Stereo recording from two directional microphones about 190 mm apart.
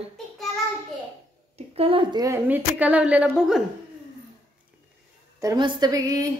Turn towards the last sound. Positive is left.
turn(degrees=-20)  # may be behind; listen again after turning